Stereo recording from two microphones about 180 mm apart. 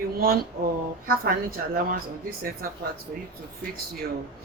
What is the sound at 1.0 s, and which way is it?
Speech, 55° right (ahead or behind).